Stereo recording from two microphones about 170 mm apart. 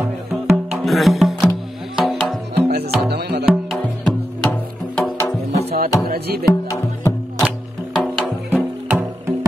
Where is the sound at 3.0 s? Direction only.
75° right (ahead or behind).